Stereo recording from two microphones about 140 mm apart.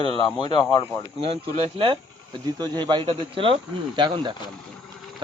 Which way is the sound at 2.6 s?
30° right (ahead or behind).